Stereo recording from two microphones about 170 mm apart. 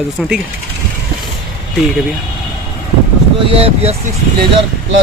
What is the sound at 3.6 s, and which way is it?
Speech, 35° right (ahead or behind).